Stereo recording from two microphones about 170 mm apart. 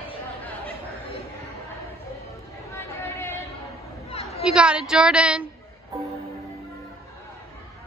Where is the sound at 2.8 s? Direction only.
15° left (ahead or behind).